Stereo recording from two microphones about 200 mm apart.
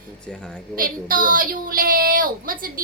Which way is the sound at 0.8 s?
45° right (ahead or behind).